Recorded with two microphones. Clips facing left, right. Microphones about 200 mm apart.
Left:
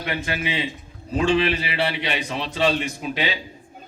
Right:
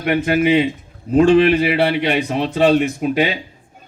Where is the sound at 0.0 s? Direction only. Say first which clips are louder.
Right 11 dB; 55° right (ahead or behind).